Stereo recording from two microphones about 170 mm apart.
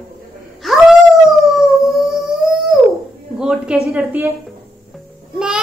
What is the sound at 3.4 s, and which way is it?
Speech, 5° right (ahead or behind).